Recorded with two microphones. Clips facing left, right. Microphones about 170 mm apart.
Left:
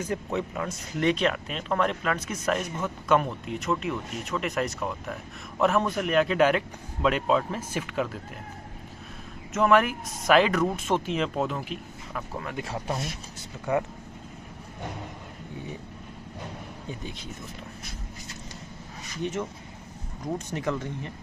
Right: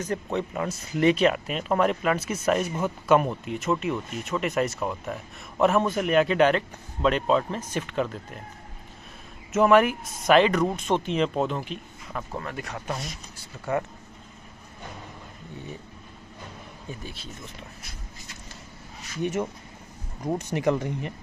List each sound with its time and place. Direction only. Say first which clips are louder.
0.0 s speech: right 1 dB; 5° left (ahead or behind)
0.6 s speech: right 4 dB; 5° right (ahead or behind)
9.5 s speech: right 3 dB; 5° right (ahead or behind)
12.5 s speech: left 2 dB; 25° left (ahead or behind)
17.0 s speech: left 2 dB; 20° left (ahead or behind)
20.3 s speech: right 6 dB; 10° right (ahead or behind)